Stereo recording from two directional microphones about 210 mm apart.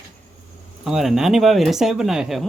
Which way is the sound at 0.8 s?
Centre (ahead or behind).